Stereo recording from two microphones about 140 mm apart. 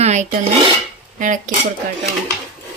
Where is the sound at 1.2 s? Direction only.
70° right (ahead or behind).